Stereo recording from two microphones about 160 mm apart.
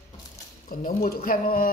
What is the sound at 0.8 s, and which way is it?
Speech, 65° left (ahead or behind).